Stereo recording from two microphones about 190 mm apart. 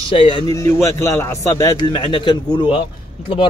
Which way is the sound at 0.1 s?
25° left (ahead or behind).